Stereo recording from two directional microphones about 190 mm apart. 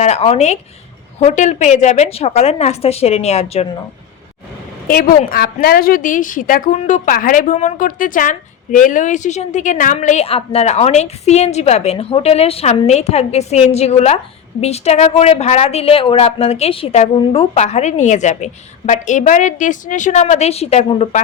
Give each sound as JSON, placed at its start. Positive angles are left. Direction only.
{"t": 0.0, "sound": "a woman's voice", "side_deg": 35}
{"t": 4.9, "sound": "a woman's voice", "side_deg": 50}